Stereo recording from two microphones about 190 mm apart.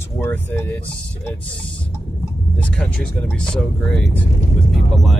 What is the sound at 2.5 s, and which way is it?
Speech, 5° left (ahead or behind).